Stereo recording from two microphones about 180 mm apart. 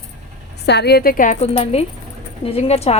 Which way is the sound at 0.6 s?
65° left (ahead or behind).